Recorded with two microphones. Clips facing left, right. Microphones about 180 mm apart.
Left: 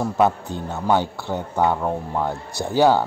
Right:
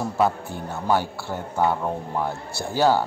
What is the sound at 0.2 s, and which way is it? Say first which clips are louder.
A man's voice: left 3 dB; 20° left (ahead or behind).